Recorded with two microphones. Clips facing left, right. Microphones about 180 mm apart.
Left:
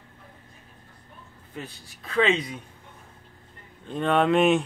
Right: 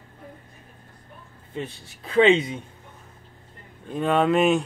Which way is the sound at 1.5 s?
25° right (ahead or behind).